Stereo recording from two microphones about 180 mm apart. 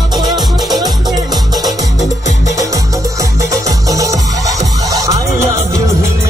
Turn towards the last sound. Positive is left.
turn(degrees=-15)  # may be behind; listen again after turning